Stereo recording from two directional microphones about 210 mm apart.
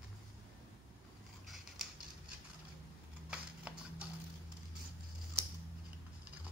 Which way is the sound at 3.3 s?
5° right (ahead or behind).